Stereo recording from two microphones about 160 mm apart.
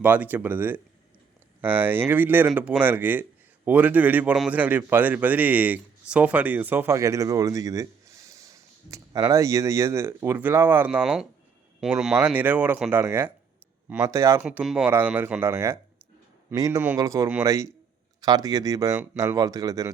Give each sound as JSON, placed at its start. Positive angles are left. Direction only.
{"t": 0.0, "sound": "a man's voice", "side_deg": -10}
{"t": 14.4, "sound": "a man's voice", "side_deg": 0}